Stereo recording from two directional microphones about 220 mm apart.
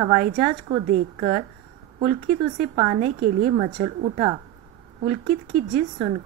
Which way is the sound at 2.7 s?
30° right (ahead or behind).